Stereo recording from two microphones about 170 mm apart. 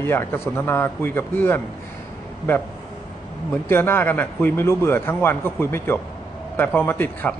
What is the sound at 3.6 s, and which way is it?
Speech, 15° left (ahead or behind).